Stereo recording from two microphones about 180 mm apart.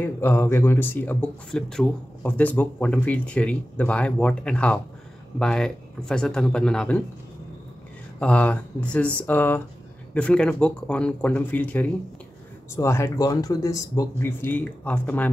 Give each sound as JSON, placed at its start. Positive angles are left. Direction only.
{"t": 0.0, "sound": "speech", "side_deg": 10}
{"t": 8.2, "sound": "speech", "side_deg": 5}